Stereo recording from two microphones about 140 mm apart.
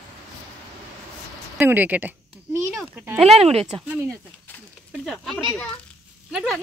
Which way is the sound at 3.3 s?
45° right (ahead or behind).